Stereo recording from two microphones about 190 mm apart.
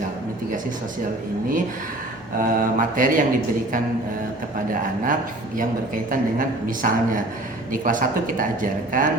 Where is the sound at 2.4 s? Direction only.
45° right (ahead or behind).